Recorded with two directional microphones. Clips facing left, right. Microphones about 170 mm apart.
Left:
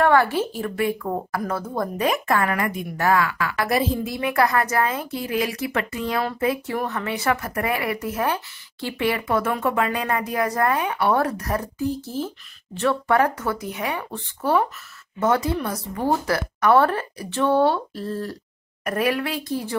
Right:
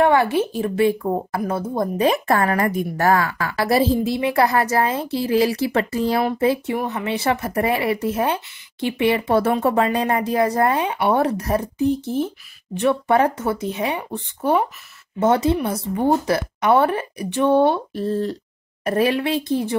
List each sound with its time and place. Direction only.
0.0 s speech: 20° right (ahead or behind)
2.0 s a woman's voice: 30° right (ahead or behind)
6.7 s speech: 15° right (ahead or behind)